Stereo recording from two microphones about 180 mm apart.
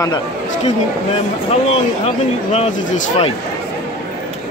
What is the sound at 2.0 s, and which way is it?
Speech, 35° left (ahead or behind).